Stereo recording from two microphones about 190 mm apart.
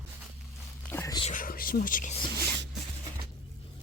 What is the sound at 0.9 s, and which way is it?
Whispering, 15° left (ahead or behind).